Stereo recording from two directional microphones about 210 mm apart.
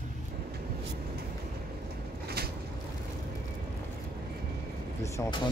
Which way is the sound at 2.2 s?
50° right (ahead or behind).